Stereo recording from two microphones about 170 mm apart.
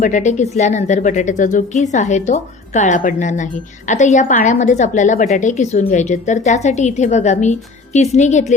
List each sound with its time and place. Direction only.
0.0 s a woman's voice: 45° left (ahead or behind)